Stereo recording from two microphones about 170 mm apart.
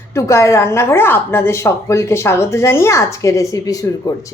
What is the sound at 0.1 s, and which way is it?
Speech, 15° left (ahead or behind).